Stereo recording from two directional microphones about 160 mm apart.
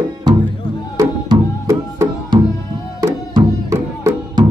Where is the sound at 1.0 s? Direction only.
20° right (ahead or behind).